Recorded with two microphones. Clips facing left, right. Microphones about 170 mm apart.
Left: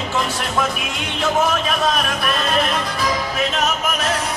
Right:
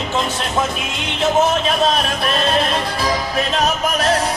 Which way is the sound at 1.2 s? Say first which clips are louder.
Right 3 dB; 25° right (ahead or behind).